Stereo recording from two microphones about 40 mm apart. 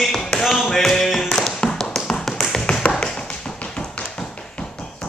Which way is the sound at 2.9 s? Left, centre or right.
Left.